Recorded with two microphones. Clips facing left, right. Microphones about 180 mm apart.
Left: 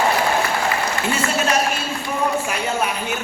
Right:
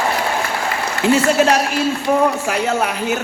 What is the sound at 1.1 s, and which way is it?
A man's voice, 80° right.